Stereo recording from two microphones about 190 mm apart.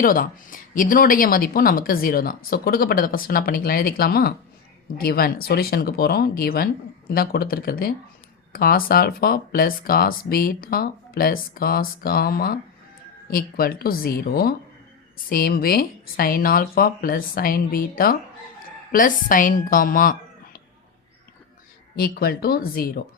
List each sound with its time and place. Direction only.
0.0 s a woman's voice: 45° left (ahead or behind)
21.9 s speech: 55° left (ahead or behind)